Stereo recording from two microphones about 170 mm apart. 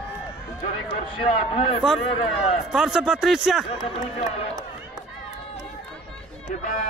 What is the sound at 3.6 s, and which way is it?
Speech, 35° left (ahead or behind).